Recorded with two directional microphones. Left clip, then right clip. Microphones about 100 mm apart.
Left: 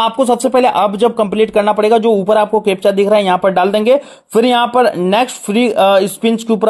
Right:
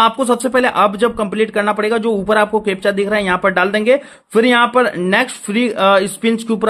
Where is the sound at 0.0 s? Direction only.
30° left (ahead or behind).